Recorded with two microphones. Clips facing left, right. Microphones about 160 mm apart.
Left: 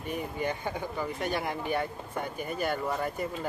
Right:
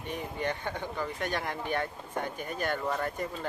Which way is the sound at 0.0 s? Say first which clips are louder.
Left 2 dB; 10° left (ahead or behind).